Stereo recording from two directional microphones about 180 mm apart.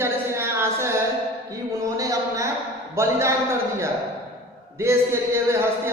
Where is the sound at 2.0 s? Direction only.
15° right (ahead or behind).